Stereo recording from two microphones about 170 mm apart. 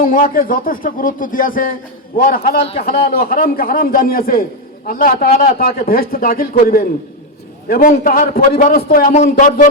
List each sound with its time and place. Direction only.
0.0 s speech: 55° left (ahead or behind)
2.6 s a man's voice: 35° left (ahead or behind)
2.8 s speech: 60° left (ahead or behind)